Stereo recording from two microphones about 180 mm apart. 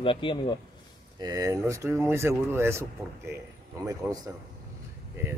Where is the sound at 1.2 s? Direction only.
20° right (ahead or behind).